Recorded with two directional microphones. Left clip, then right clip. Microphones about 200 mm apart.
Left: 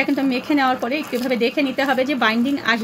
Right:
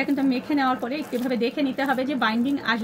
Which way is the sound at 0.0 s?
25° left (ahead or behind).